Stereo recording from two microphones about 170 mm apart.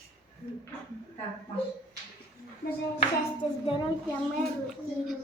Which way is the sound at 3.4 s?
35° left (ahead or behind).